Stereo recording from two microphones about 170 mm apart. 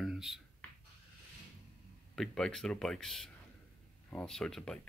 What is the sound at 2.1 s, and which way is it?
Speech, centre (ahead or behind).